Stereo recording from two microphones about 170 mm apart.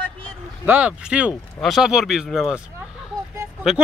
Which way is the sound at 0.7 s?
10° right (ahead or behind).